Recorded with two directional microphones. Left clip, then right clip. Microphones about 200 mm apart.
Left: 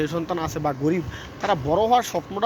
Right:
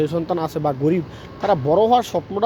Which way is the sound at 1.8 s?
30° right (ahead or behind).